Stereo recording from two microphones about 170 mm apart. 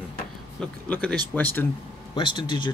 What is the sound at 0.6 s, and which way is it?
Speech, 5° left (ahead or behind).